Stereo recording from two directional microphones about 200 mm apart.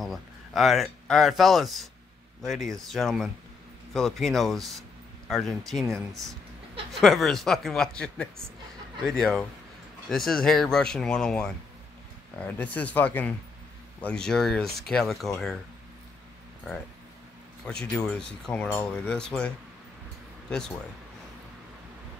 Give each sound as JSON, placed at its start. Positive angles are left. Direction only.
{"t": 0.0, "sound": "speech", "side_deg": 0}
{"t": 17.6, "sound": "speech", "side_deg": 5}